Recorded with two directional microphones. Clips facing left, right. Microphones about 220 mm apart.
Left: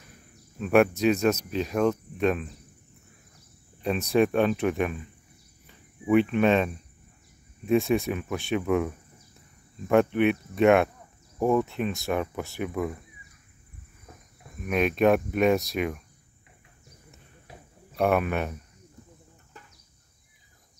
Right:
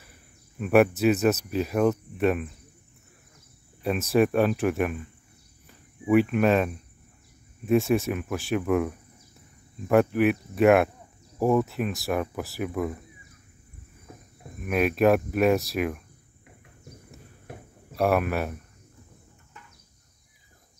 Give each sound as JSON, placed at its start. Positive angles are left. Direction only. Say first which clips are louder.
{"t": 0.0, "sound": "speech", "louder": "left 3 dB", "side_deg": -5}
{"t": 3.8, "sound": "speech", "louder": "right 1 dB", "side_deg": 0}
{"t": 14.6, "sound": "speech", "louder": "right 1 dB", "side_deg": -5}
{"t": 17.5, "sound": "a sound", "louder": "right 6 dB", "side_deg": -55}
{"t": 17.9, "sound": "speech", "louder": "even", "side_deg": 0}